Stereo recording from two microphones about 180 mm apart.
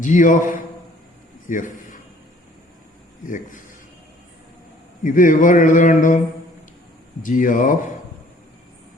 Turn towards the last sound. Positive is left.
turn(degrees=45)  # may be behind; listen again after turning